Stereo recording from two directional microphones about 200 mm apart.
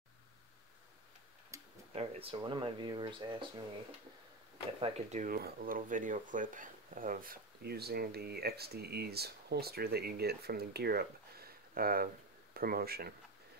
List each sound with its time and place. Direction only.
1.5 s tick-tock: 15° right (ahead or behind)
2.0 s speech: 30° right (ahead or behind)
4.7 s speech: 35° right (ahead or behind); by 13.1 s 50° right (ahead or behind)